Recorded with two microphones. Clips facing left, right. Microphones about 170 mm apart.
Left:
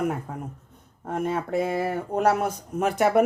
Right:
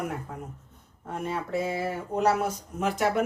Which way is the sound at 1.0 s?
55° left (ahead or behind).